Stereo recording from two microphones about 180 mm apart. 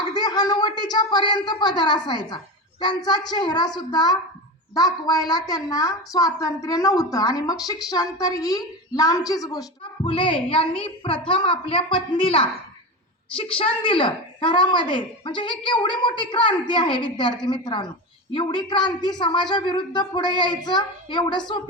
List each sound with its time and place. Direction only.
0.1 s a woman's voice: 20° left (ahead or behind)